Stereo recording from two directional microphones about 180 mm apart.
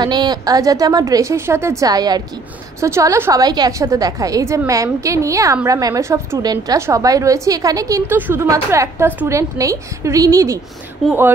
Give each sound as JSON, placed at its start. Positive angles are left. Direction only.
{"t": 0.0, "sound": "a woman's voice", "side_deg": -25}
{"t": 11.0, "sound": "speech", "side_deg": 5}